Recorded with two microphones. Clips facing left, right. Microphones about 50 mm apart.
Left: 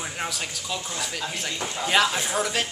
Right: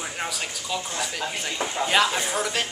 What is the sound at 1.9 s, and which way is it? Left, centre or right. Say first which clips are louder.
Speech: left 1 dB; centre.